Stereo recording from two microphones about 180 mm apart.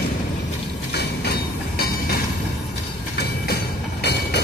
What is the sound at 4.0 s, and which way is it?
Vehicle, 65° left (ahead or behind).